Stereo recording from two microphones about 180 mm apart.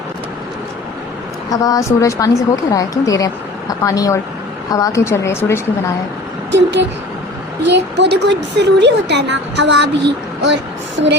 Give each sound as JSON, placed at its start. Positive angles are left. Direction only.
{"t": 1.5, "sound": "a woman's voice", "side_deg": 20}
{"t": 6.5, "sound": "a woman's voice", "side_deg": -80}